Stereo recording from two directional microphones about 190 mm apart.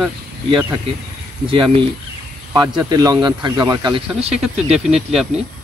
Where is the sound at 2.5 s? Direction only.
20° right (ahead or behind).